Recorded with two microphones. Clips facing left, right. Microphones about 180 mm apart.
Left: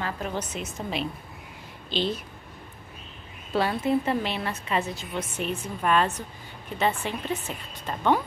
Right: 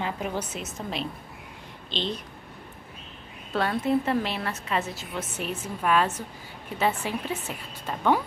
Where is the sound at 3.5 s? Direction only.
Centre (ahead or behind).